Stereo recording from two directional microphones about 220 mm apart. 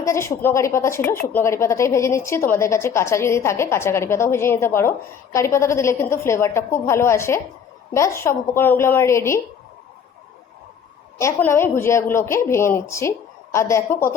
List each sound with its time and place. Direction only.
0.0 s speech: 10° left (ahead or behind)
11.2 s speech: 10° left (ahead or behind)